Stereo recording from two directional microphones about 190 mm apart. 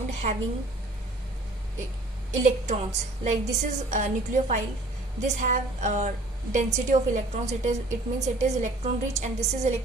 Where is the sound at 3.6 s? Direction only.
40° right (ahead or behind).